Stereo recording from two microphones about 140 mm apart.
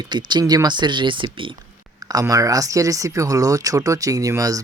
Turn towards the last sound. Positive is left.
turn(degrees=-25)  # may be behind; listen again after turning